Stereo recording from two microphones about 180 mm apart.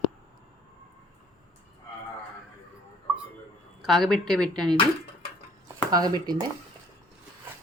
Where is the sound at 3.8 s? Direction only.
Centre (ahead or behind).